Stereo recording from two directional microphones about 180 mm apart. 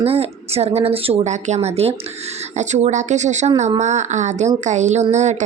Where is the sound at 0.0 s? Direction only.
35° right (ahead or behind).